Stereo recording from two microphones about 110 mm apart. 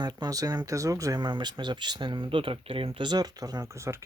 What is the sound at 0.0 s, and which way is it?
Speech, 40° right (ahead or behind).